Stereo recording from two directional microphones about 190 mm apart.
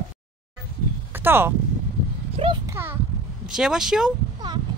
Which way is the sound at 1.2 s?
10° right (ahead or behind).